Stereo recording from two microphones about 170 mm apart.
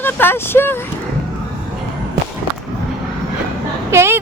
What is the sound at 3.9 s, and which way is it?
Speech, 15° right (ahead or behind).